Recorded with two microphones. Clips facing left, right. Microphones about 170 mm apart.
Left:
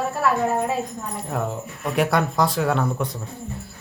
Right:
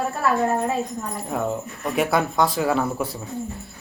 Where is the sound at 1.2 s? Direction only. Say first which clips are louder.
Right 1 dB; centre (ahead or behind).